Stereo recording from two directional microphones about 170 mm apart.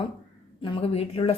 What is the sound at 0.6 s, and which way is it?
Speech, 30° left (ahead or behind).